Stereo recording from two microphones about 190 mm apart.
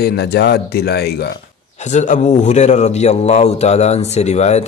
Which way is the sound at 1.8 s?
40° left (ahead or behind).